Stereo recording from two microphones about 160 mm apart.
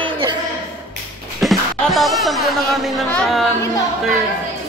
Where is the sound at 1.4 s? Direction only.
Centre (ahead or behind).